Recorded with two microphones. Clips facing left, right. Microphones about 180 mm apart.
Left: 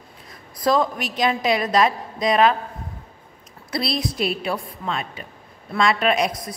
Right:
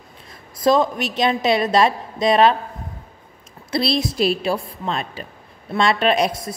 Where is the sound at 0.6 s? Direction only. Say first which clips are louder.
Right 3 dB; 25° right (ahead or behind).